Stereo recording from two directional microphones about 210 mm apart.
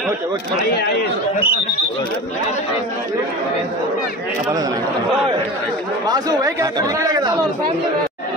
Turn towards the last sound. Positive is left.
turn(degrees=-20)  # may be behind; listen again after turning